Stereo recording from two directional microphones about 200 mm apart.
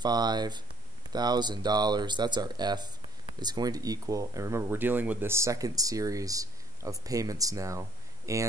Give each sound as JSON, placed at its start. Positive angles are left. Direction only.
{"t": 0.0, "sound": "speech", "side_deg": -20}